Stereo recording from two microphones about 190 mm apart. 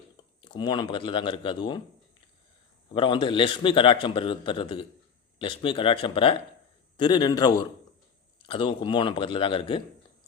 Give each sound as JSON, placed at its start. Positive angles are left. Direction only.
{"t": 0.4, "sound": "a man's voice", "side_deg": 25}
{"t": 2.9, "sound": "a man's voice", "side_deg": 25}